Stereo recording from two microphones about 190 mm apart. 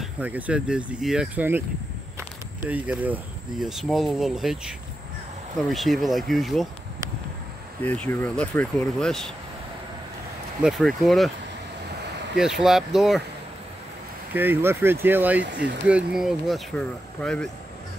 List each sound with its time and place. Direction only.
0.0 s speech: 10° right (ahead or behind)
7.8 s speech: 10° left (ahead or behind)
10.6 s speech: centre (ahead or behind)
12.4 s speech: centre (ahead or behind)
14.3 s speech: 10° right (ahead or behind)
15.4 s speech: 65° right (ahead or behind)
15.9 s speech: 5° right (ahead or behind)